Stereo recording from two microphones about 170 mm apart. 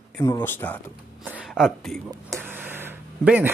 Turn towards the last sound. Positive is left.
turn(degrees=-10)  # may be behind; listen again after turning